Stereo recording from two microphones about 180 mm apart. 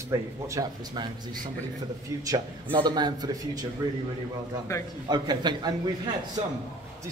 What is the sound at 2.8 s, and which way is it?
Speech, 25° right (ahead or behind).